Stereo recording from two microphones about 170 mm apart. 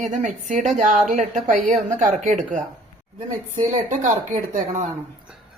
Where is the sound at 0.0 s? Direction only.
45° right (ahead or behind).